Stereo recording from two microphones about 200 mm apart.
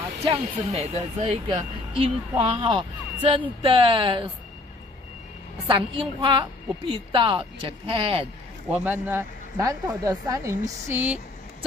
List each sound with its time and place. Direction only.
0.2 s a woman's voice: 30° right (ahead or behind)
5.7 s a woman's voice: 25° right (ahead or behind)
8.6 s a man's voice: 5° right (ahead or behind)